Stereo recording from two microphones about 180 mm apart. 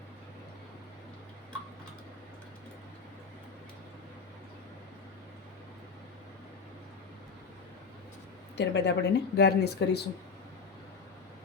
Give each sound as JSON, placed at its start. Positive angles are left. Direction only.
{"t": 8.5, "sound": "speech", "side_deg": 70}